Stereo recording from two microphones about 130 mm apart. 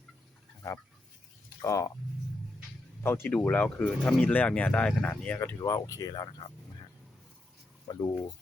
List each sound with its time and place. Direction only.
1.6 s speech: 25° left (ahead or behind)
3.0 s speech: 15° left (ahead or behind)
5.5 s speech: 30° left (ahead or behind)
7.9 s speech: 30° left (ahead or behind)